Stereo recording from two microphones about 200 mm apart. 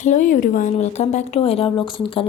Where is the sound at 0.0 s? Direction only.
40° left (ahead or behind).